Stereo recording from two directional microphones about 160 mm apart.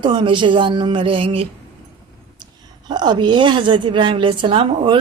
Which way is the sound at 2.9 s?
25° right (ahead or behind).